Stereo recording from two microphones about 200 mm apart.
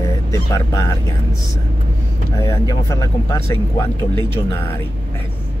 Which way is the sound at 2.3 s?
15° left (ahead or behind).